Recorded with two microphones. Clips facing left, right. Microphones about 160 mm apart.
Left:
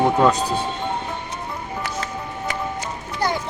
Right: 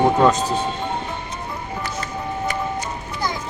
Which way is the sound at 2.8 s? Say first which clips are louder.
Left 1 dB; 65° left (ahead or behind).